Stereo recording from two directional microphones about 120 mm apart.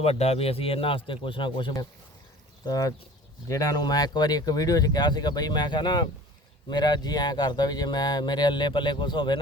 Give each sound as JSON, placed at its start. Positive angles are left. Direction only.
{"t": 0.0, "sound": "speech", "side_deg": 60}